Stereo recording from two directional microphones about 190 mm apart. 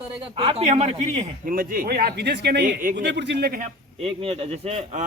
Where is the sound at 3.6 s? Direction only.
30° right (ahead or behind).